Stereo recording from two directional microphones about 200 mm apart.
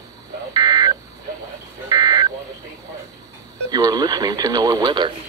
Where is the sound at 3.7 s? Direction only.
20° right (ahead or behind).